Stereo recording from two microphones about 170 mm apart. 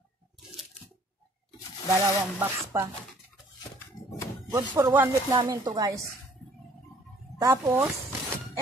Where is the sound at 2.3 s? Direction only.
15° right (ahead or behind).